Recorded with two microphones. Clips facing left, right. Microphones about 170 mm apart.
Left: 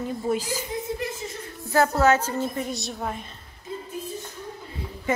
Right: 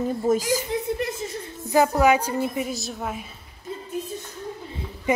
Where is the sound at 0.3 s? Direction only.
45° right (ahead or behind).